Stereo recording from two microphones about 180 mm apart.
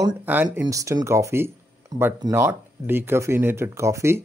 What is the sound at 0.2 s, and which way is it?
Speech, 10° right (ahead or behind).